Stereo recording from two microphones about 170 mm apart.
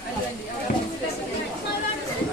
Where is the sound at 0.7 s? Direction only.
50° left (ahead or behind).